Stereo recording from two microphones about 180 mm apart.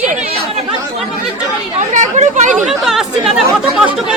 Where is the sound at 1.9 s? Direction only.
40° right (ahead or behind).